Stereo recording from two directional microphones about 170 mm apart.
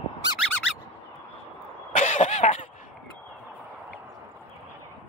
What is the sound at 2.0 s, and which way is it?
Cough, 45° left (ahead or behind).